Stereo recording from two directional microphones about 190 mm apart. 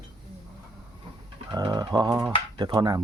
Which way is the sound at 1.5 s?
20° right (ahead or behind).